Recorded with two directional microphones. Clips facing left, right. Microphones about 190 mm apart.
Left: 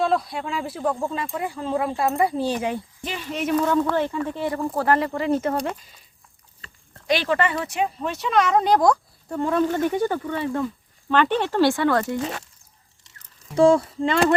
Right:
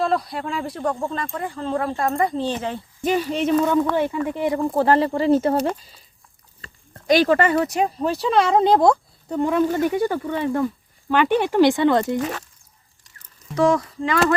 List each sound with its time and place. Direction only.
0.0 s speech: centre (ahead or behind)
3.0 s speech: 45° right (ahead or behind)
3.3 s speech: 30° right (ahead or behind)
3.9 s speech: 10° right (ahead or behind)
13.6 s a sound: 30° left (ahead or behind)